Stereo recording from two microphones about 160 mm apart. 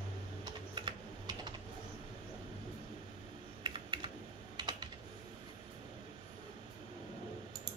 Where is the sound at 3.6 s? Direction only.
30° right (ahead or behind).